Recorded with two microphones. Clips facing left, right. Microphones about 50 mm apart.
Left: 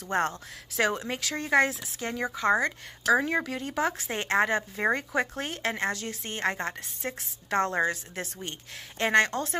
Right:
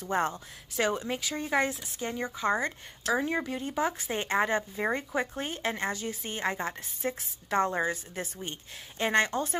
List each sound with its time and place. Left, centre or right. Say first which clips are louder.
0.0 s a woman's voice: left 1 dB; left
0.7 s speech: left 2 dB; left
1.0 s speech: left 1 dB; left
2.6 s a woman's voice: left 4 dB; left
3.4 s a woman's voice: left 1 dB; left